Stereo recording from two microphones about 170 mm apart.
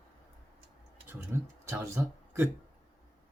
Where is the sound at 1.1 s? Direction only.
15° right (ahead or behind).